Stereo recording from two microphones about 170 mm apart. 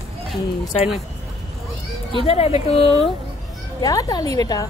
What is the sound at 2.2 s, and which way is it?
Speech, 35° left (ahead or behind).